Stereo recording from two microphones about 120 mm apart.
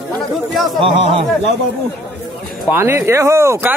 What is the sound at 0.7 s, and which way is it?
Speech, 45° right (ahead or behind).